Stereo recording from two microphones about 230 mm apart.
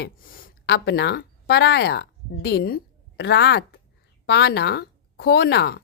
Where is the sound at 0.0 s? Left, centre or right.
Left.